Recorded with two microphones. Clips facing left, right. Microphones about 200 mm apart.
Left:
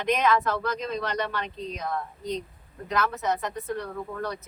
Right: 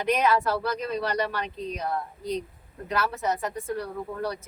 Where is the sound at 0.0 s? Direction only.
10° right (ahead or behind).